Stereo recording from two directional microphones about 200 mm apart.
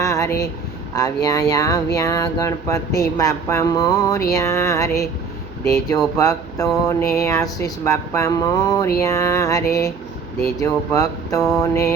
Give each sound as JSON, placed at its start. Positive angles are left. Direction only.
{"t": 0.0, "sound": "a sound", "side_deg": 15}
{"t": 0.9, "sound": "speech", "side_deg": 20}
{"t": 6.1, "sound": "speech", "side_deg": 15}